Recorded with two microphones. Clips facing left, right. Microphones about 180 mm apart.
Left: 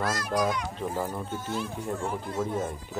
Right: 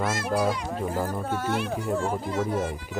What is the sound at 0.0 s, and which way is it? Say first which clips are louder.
Speech: right 2 dB; 25° right (ahead or behind).